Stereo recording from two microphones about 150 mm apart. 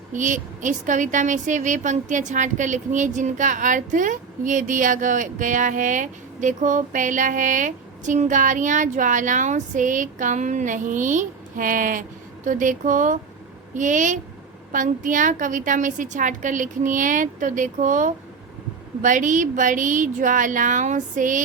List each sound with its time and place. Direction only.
0.1 s a woman's voice: 55° right (ahead or behind)